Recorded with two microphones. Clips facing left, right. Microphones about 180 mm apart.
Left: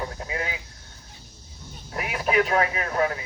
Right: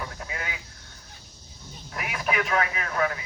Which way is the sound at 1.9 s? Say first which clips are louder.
Left 5 dB; 30° left (ahead or behind).